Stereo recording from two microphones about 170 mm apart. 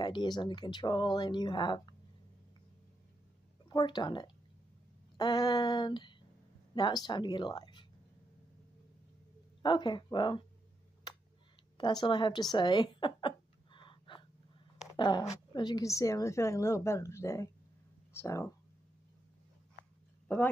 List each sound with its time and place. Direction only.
0.0 s speech: 25° left (ahead or behind)
3.6 s speech: 25° left (ahead or behind)
9.6 s speech: 25° left (ahead or behind)
11.1 s tick: 25° left (ahead or behind)
11.8 s a sound: 25° left (ahead or behind)
15.0 s a woman's voice: 25° left (ahead or behind)